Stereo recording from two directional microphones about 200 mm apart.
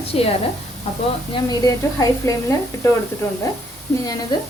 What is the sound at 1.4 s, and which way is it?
Speech, 20° left (ahead or behind).